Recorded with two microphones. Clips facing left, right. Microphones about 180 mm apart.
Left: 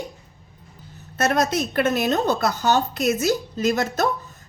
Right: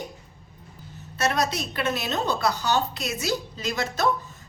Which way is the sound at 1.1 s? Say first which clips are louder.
Left 4 dB; 50° left (ahead or behind).